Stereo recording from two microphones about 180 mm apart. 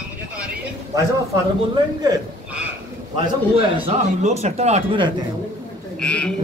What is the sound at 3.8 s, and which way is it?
Speech, 40° right (ahead or behind).